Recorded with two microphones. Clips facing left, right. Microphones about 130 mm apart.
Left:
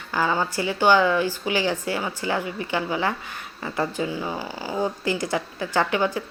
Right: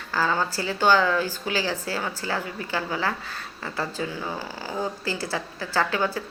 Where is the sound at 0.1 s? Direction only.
15° left (ahead or behind).